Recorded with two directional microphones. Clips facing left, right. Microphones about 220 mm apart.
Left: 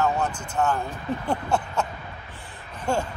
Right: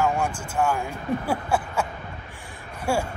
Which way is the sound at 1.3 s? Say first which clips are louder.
Even; 5° right (ahead or behind).